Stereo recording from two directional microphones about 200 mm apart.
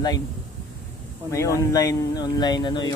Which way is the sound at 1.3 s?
15° left (ahead or behind).